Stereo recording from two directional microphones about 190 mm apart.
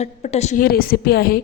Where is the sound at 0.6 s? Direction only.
50° left (ahead or behind).